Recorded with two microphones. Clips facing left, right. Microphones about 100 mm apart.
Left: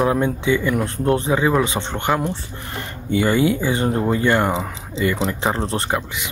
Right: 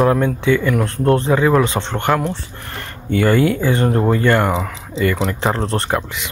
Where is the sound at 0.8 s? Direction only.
65° right (ahead or behind).